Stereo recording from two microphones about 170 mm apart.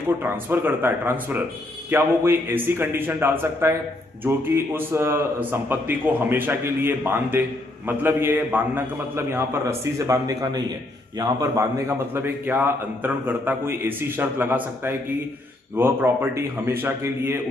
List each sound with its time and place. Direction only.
0.2 s a man's voice: 10° right (ahead or behind)